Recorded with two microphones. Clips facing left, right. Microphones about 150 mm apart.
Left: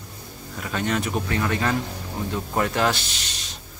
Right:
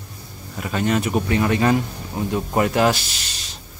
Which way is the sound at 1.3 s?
20° right (ahead or behind).